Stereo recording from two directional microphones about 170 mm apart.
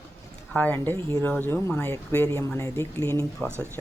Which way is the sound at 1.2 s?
10° left (ahead or behind).